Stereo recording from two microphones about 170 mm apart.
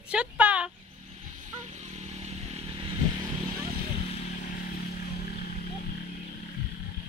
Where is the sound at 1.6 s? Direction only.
40° right (ahead or behind).